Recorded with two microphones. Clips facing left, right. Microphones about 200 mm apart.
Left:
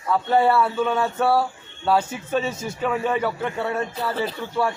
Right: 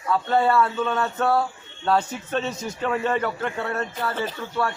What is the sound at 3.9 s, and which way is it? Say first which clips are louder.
Speech: left 2 dB; 35° left (ahead or behind).